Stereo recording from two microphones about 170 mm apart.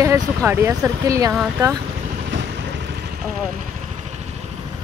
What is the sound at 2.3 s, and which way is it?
Vehicle, 90° right.